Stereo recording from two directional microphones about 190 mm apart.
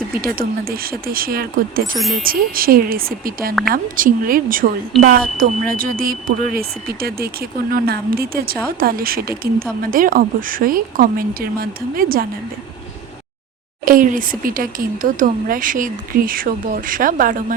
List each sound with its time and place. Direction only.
0.3 s speech: 50° right (ahead or behind)
13.8 s speech: 45° right (ahead or behind)